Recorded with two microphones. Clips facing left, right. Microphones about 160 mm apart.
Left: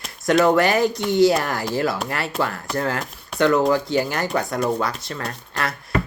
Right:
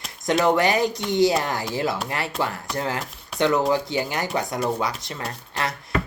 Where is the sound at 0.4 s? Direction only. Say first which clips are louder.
Left 1 dB; 20° right (ahead or behind).